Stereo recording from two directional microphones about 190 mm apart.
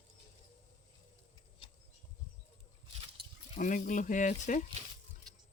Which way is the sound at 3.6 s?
45° left (ahead or behind).